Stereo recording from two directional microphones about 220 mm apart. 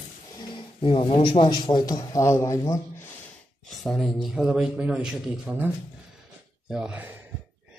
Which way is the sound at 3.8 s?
Centre (ahead or behind).